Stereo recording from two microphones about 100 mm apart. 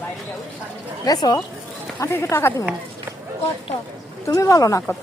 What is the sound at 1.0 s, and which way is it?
Speech, 40° left (ahead or behind).